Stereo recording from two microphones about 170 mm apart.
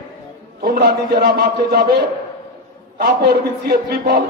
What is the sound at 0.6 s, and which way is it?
A man's voice, 65° right (ahead or behind).